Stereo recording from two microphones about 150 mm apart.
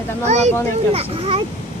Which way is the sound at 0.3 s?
50° right (ahead or behind).